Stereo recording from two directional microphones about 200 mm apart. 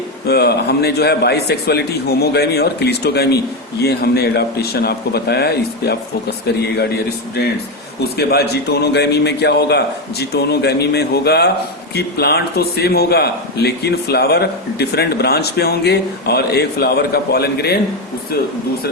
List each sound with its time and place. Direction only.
0.3 s a man's voice: 55° left (ahead or behind)
8.1 s a man's voice: 55° left (ahead or behind)